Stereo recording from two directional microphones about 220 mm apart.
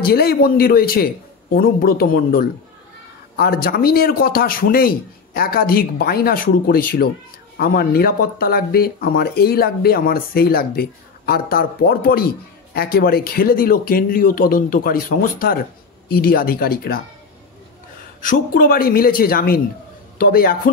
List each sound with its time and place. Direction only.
0.0 s speech: 45° left (ahead or behind)
18.2 s speech: 40° left (ahead or behind)